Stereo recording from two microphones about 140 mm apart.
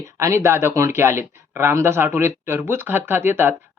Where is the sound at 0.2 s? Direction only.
20° right (ahead or behind).